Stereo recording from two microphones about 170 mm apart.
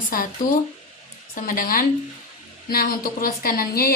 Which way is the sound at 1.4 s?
55° left (ahead or behind).